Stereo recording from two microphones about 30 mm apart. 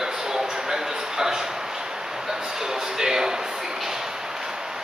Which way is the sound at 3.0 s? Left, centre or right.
Centre.